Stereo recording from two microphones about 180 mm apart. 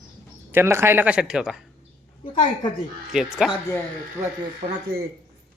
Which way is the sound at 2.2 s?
25° left (ahead or behind).